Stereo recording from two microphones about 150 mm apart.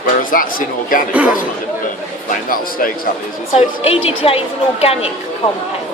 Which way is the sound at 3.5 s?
40° left (ahead or behind).